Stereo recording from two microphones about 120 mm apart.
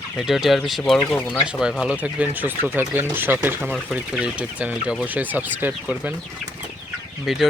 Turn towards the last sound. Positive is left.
turn(degrees=0)  # may be behind; listen again after turning